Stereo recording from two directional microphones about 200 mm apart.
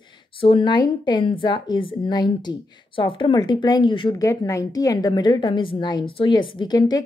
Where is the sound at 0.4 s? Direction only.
25° left (ahead or behind).